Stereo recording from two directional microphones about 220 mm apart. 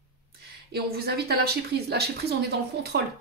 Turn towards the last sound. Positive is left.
turn(degrees=-45)  # may be behind; listen again after turning